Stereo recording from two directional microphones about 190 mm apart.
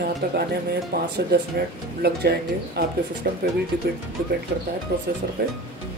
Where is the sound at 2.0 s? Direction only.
55° right (ahead or behind).